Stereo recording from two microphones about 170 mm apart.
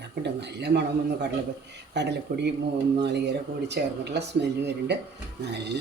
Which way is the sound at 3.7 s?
85° right.